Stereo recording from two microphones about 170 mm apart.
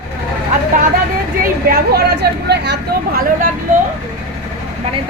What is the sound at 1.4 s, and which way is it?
Speech, 60° right (ahead or behind).